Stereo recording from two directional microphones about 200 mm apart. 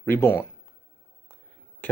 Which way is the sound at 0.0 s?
10° left (ahead or behind).